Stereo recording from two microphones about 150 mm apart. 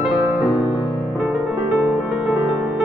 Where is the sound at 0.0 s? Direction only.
Centre (ahead or behind).